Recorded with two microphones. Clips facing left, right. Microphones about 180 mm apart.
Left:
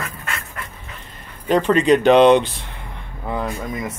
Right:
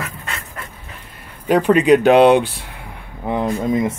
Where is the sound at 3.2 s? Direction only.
20° right (ahead or behind).